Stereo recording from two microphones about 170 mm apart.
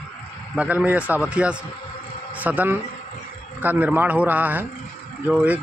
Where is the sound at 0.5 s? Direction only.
10° right (ahead or behind).